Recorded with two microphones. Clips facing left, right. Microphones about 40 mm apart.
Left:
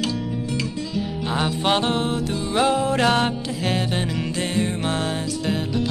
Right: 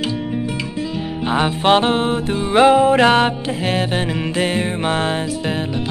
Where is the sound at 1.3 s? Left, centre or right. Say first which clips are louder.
Right 7 dB; right.